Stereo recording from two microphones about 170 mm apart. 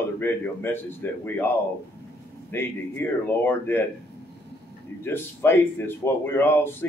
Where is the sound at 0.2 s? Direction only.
10° left (ahead or behind).